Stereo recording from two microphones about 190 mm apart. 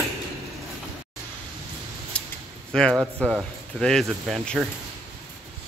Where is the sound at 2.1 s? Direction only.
5° left (ahead or behind).